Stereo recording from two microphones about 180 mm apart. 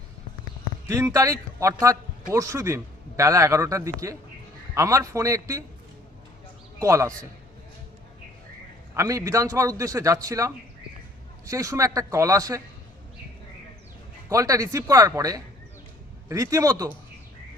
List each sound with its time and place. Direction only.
0.9 s a man's voice: 15° right (ahead or behind)
6.7 s a man's voice: 15° right (ahead or behind)
9.0 s a man's voice: 20° right (ahead or behind)
14.3 s speech: 20° right (ahead or behind)